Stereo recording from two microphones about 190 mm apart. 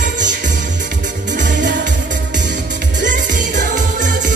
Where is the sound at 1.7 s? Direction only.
65° right (ahead or behind).